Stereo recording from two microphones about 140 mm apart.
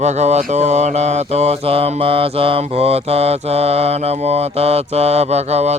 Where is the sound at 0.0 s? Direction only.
55° right (ahead or behind).